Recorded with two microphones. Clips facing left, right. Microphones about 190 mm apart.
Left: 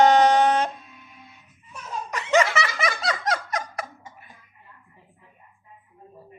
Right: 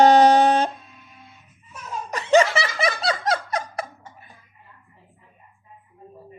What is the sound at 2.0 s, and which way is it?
Snicker, 30° right (ahead or behind).